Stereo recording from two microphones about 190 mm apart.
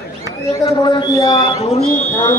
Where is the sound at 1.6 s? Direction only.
35° left (ahead or behind).